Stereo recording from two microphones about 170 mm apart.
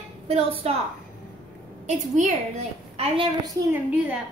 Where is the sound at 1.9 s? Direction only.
45° right (ahead or behind).